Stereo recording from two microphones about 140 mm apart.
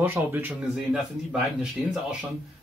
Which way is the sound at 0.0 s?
15° right (ahead or behind).